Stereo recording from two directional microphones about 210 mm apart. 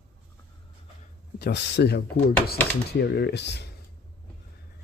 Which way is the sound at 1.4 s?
50° left (ahead or behind).